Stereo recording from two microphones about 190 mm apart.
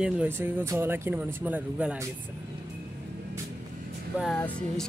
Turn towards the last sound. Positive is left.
turn(degrees=0)  # may be behind; listen again after turning